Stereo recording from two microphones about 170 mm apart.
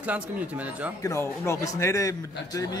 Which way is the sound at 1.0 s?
15° left (ahead or behind).